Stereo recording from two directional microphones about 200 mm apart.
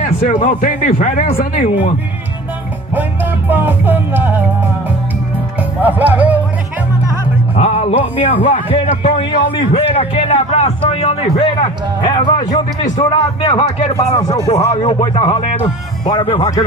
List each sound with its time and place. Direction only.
0.4 s a man's voice: 40° left (ahead or behind)
2.9 s music: 10° right (ahead or behind)
5.8 s music: 10° right (ahead or behind)
7.5 s a man's voice: 30° left (ahead or behind)